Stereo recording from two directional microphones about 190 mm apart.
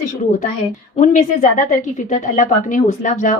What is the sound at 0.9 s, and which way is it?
A woman's voice, 40° left (ahead or behind).